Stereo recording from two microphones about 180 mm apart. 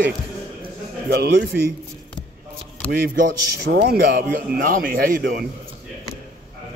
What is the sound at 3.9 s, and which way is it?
A man's voice, 60° right (ahead or behind).